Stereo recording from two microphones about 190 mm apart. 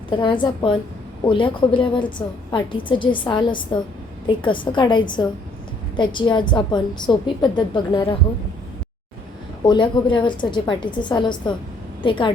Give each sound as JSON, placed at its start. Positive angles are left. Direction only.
{"t": 0.1, "sound": "a woman's voice", "side_deg": 25}
{"t": 9.6, "sound": "a woman's voice", "side_deg": 25}